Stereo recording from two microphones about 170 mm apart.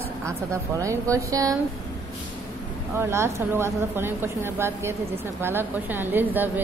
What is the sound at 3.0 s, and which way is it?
Speech, 15° right (ahead or behind).